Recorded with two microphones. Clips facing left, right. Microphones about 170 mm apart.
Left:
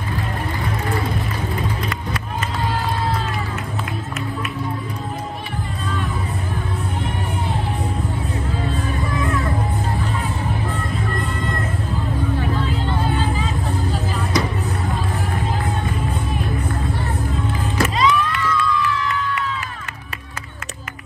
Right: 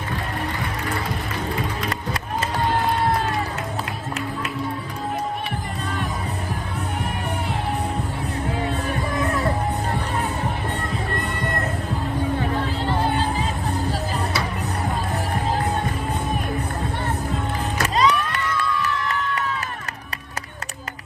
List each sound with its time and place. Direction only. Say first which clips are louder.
13.1 s music: left 1 dB; 40° right (ahead or behind)
17.9 s crowd: right 1 dB; 40° right (ahead or behind)